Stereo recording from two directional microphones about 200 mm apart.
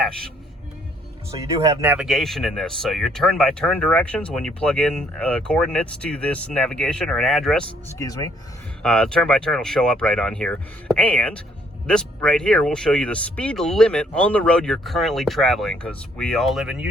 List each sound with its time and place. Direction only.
1.8 s speech: 5° right (ahead or behind)
7.9 s speech: 20° left (ahead or behind)
8.8 s speech: 5° left (ahead or behind)